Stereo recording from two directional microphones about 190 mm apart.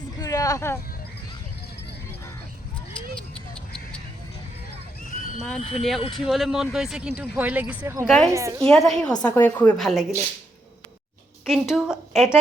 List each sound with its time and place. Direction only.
0.2 s vehicle: 20° left (ahead or behind)
5.4 s speech: 5° left (ahead or behind)
8.0 s speech: centre (ahead or behind)
8.3 s a woman's voice: 15° right (ahead or behind)
8.6 s a woman's voice: centre (ahead or behind)
11.7 s speech: 5° right (ahead or behind)